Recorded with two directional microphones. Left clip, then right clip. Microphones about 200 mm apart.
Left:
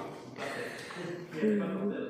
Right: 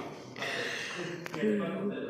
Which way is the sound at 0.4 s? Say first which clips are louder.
Right 4 dB; centre (ahead or behind).